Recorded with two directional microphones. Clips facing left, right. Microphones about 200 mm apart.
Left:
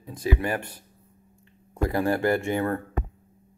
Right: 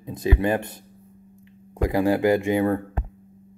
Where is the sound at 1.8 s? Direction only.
15° right (ahead or behind).